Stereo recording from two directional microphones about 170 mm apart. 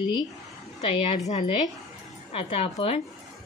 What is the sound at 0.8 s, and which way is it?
A woman's voice, 40° left (ahead or behind).